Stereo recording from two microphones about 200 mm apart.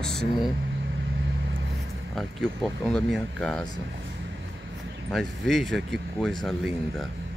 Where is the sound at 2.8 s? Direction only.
5° left (ahead or behind).